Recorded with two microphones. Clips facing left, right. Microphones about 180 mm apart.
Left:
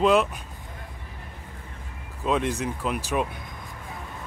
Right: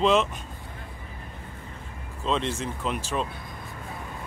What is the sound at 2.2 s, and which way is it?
Speech, 10° left (ahead or behind).